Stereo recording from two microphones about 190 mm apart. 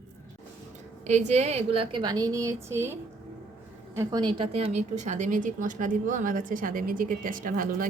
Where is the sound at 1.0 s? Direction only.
35° right (ahead or behind).